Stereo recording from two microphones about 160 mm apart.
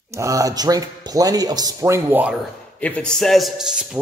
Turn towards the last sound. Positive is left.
turn(degrees=-5)  # may be behind; listen again after turning